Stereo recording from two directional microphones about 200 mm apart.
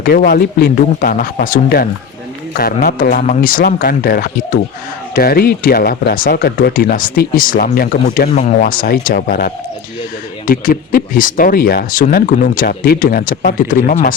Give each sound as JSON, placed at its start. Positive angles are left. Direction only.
{"t": 0.0, "sound": "speech", "side_deg": 50}
{"t": 8.3, "sound": "speech", "side_deg": 35}